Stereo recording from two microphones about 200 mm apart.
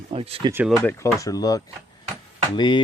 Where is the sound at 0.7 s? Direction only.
10° left (ahead or behind).